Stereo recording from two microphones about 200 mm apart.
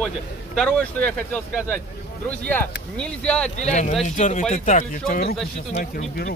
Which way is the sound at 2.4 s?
5° left (ahead or behind).